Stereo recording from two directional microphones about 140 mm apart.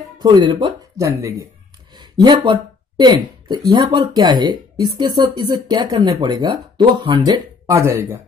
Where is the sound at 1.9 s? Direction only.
30° right (ahead or behind).